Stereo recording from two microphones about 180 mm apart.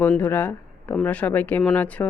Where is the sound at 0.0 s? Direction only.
10° left (ahead or behind).